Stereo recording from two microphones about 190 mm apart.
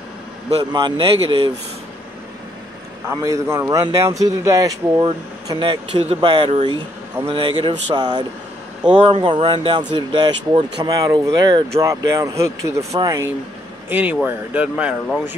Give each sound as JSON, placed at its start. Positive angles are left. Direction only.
{"t": 0.5, "sound": "a man's voice", "side_deg": -25}
{"t": 3.1, "sound": "a man's voice", "side_deg": -15}